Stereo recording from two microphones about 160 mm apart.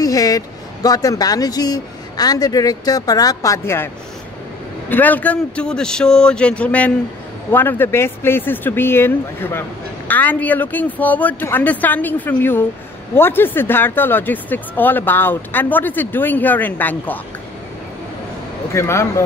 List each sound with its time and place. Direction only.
0.0 s a sound: 20° left (ahead or behind)
0.8 s speech: 25° left (ahead or behind)
18.7 s speech: 15° left (ahead or behind)